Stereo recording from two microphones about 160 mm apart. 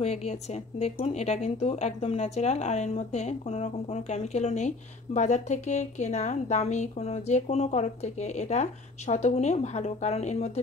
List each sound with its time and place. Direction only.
0.0 s speech: 40° left (ahead or behind)